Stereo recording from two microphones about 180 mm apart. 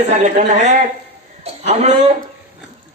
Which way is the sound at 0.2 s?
40° right (ahead or behind).